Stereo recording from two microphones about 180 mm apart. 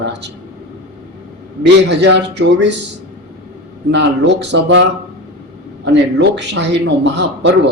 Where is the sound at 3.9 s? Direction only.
75° right (ahead or behind).